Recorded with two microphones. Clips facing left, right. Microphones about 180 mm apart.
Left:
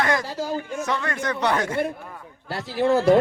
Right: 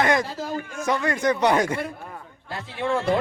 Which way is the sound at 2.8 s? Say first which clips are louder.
Left 6 dB; 35° left (ahead or behind).